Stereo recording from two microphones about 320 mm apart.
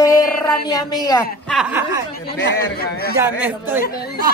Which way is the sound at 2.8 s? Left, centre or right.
Left.